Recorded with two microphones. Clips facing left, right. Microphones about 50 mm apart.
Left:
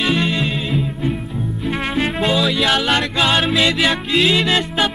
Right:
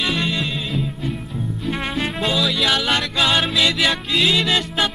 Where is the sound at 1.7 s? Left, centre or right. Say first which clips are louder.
Left 4 dB; centre.